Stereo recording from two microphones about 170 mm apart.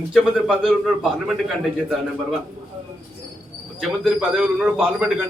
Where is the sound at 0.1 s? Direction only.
Centre (ahead or behind).